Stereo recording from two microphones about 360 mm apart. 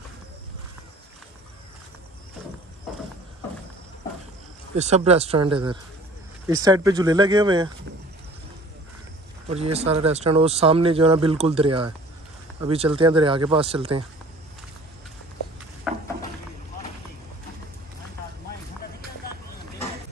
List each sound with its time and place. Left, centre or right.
4.7 s speech: centre
9.5 s speech: centre
15.9 s a sound: centre